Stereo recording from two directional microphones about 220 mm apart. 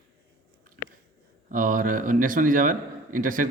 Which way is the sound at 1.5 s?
35° right (ahead or behind).